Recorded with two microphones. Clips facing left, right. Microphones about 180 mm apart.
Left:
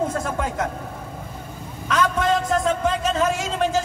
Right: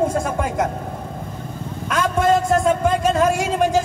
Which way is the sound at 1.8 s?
10° right (ahead or behind).